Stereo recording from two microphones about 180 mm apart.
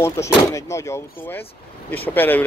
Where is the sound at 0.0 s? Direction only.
15° left (ahead or behind).